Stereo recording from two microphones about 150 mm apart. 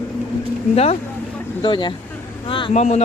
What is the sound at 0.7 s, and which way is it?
Speech, 40° left (ahead or behind).